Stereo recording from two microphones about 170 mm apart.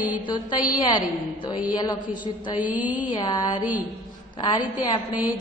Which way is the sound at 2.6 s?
10° right (ahead or behind).